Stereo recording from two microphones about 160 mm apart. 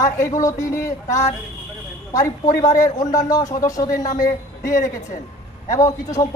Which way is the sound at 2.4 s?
55° left (ahead or behind).